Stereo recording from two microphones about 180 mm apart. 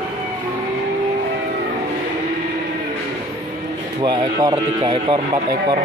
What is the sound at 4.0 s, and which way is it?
Speech, 25° right (ahead or behind).